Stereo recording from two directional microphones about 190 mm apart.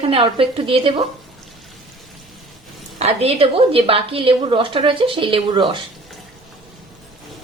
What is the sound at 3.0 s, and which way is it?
A woman's voice, 35° right (ahead or behind).